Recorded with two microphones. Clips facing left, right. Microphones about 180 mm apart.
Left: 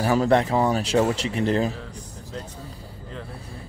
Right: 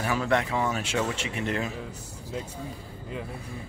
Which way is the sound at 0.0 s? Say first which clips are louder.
Left 6 dB; 35° left (ahead or behind).